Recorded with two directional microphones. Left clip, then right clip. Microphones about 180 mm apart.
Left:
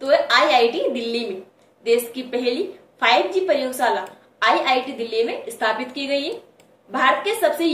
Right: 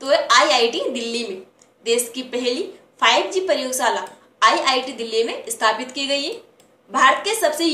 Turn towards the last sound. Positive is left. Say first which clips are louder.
# even
turn(degrees=-15)  # may be behind; listen again after turning